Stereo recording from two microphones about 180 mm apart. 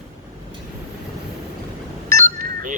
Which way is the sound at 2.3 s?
45° right (ahead or behind).